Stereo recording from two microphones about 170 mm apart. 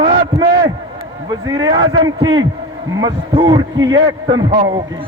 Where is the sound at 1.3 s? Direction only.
25° right (ahead or behind).